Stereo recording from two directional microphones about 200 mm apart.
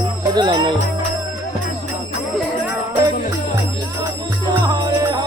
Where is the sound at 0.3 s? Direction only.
25° right (ahead or behind).